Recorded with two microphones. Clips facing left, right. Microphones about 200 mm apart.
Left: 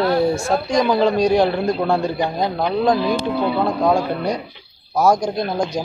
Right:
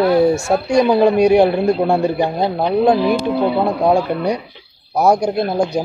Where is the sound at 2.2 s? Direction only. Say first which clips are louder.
Right 3 dB; 30° right (ahead or behind).